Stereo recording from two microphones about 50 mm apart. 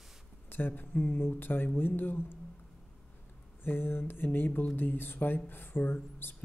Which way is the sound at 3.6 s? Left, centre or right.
Left.